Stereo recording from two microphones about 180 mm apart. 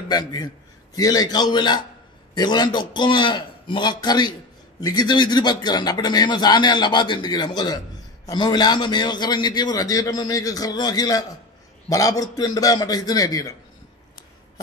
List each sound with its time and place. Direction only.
0.1 s a man's voice: 20° left (ahead or behind)